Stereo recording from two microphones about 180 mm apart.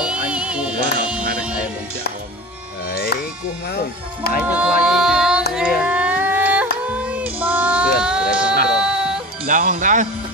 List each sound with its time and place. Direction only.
0.0 s music: 5° right (ahead or behind)
2.9 s music: 55° left (ahead or behind)
4.5 s music: 5° right (ahead or behind)
5.5 s a sound: 5° right (ahead or behind)
6.9 s child singing: 5° right (ahead or behind)
8.6 s music: 5° right (ahead or behind)
9.5 s music: 50° right (ahead or behind)